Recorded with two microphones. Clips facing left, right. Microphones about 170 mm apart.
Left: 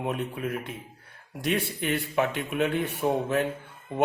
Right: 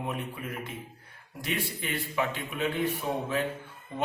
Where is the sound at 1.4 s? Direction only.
70° left (ahead or behind).